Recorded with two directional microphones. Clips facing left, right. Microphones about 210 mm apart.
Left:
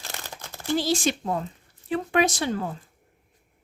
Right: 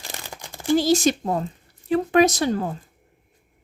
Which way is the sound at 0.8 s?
40° right (ahead or behind).